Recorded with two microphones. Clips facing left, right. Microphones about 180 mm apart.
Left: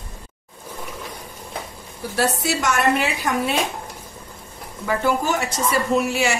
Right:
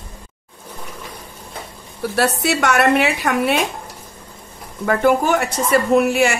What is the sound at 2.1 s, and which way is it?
A woman's voice, 65° right (ahead or behind).